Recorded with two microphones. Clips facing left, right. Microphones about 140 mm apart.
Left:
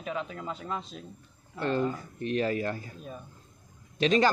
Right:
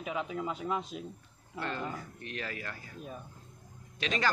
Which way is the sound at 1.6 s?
30° left (ahead or behind).